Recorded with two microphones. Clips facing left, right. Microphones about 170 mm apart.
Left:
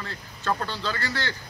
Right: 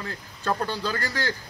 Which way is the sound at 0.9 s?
40° right (ahead or behind).